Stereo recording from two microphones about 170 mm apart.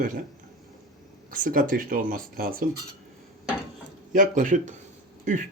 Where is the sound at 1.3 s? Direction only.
55° right (ahead or behind).